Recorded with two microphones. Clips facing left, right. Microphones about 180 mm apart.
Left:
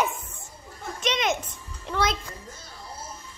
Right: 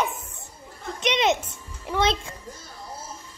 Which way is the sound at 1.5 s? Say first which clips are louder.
Right 3 dB; 10° right (ahead or behind).